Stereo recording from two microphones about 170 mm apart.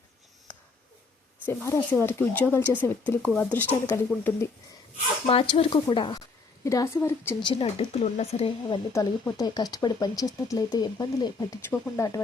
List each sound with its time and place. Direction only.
1.5 s speech: 15° left (ahead or behind)
5.2 s speech: 35° left (ahead or behind); by 7.3 s 15° left (ahead or behind)
7.4 s speech: 30° left (ahead or behind)
8.9 s speech: 20° left (ahead or behind)